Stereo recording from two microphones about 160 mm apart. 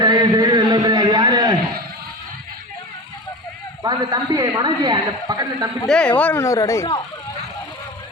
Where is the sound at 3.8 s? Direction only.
25° right (ahead or behind).